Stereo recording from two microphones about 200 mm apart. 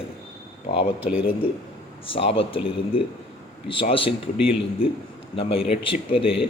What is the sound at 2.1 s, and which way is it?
Speech, 30° left (ahead or behind).